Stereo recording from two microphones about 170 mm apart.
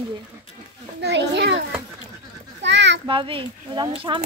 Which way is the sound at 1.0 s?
90° right.